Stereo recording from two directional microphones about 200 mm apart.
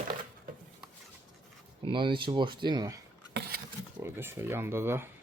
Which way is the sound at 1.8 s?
25° right (ahead or behind).